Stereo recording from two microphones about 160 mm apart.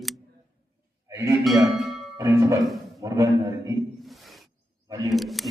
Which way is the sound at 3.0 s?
20° right (ahead or behind).